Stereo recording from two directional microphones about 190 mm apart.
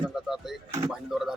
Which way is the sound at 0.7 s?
15° right (ahead or behind).